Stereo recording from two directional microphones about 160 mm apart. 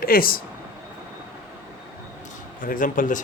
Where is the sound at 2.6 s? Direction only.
55° left (ahead or behind).